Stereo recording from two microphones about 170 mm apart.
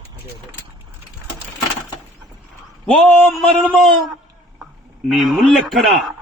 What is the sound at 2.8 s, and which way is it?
A man's voice, 5° left (ahead or behind).